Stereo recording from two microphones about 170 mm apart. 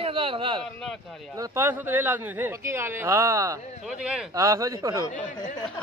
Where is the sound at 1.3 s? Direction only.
15° right (ahead or behind).